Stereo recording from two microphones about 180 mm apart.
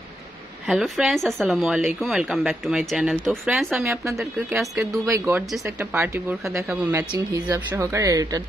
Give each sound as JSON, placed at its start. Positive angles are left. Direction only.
{"t": 0.7, "sound": "speech", "side_deg": 0}
{"t": 3.8, "sound": "speech", "side_deg": -15}
{"t": 4.2, "sound": "speech", "side_deg": 0}
{"t": 4.7, "sound": "speech", "side_deg": -15}
{"t": 7.1, "sound": "a woman's voice", "side_deg": -20}